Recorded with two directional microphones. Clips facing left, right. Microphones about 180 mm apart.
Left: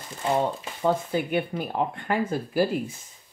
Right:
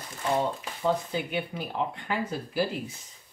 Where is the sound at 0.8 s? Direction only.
50° left (ahead or behind).